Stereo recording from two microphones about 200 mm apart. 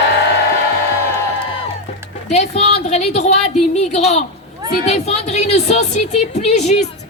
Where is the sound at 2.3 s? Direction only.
35° left (ahead or behind).